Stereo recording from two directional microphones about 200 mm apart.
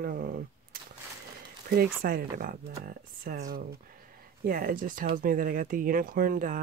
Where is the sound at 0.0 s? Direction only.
50° right (ahead or behind).